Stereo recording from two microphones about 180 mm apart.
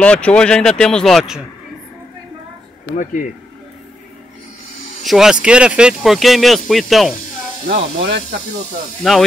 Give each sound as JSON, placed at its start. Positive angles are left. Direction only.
{"t": 0.0, "sound": "speech", "side_deg": 5}
{"t": 3.0, "sound": "speech", "side_deg": 45}
{"t": 5.0, "sound": "speech", "side_deg": -5}
{"t": 7.6, "sound": "speech", "side_deg": -65}
{"t": 9.0, "sound": "speech", "side_deg": 0}